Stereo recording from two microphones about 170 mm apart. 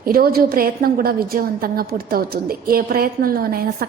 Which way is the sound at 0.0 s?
60° right (ahead or behind).